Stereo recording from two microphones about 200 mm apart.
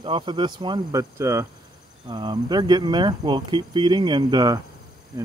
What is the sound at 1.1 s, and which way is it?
Cricket, 15° right (ahead or behind).